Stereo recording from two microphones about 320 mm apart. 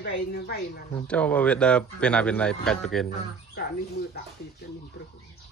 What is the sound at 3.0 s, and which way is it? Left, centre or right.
Speech, left.